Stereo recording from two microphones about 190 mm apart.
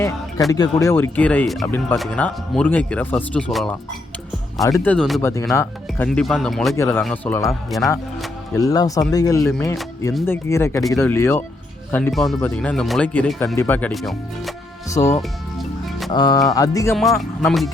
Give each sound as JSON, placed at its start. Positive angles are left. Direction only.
{"t": 0.5, "sound": "speech", "side_deg": 20}
{"t": 4.6, "sound": "speech", "side_deg": 15}
{"t": 5.2, "sound": "speech", "side_deg": 15}
{"t": 6.1, "sound": "speech", "side_deg": 0}
{"t": 6.7, "sound": "speech", "side_deg": 10}
{"t": 8.5, "sound": "speech", "side_deg": 20}
{"t": 12.1, "sound": "speech", "side_deg": 0}
{"t": 14.8, "sound": "speech", "side_deg": 15}
{"t": 15.5, "sound": "music", "side_deg": 0}
{"t": 16.1, "sound": "speech", "side_deg": 20}
{"t": 16.9, "sound": "speech", "side_deg": 0}